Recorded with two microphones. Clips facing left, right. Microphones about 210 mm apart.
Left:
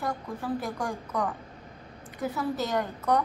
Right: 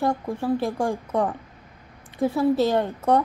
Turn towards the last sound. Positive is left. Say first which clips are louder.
# right 6 dB
turn(degrees=-30)  # may be behind; listen again after turning